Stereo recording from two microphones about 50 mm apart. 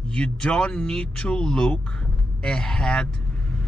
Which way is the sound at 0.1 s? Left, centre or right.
Centre.